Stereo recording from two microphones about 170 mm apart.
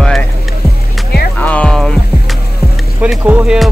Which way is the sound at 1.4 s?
10° left (ahead or behind).